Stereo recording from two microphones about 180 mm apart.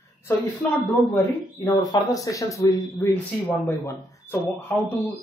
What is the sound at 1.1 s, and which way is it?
Speech, 20° left (ahead or behind).